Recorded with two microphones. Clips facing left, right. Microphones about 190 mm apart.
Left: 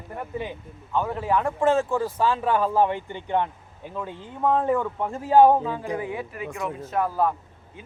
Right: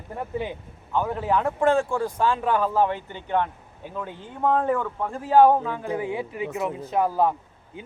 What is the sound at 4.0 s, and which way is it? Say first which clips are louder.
Speech: even; centre (ahead or behind).